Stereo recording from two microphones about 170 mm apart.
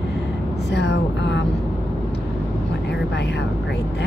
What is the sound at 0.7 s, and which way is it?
Speech, 90° left.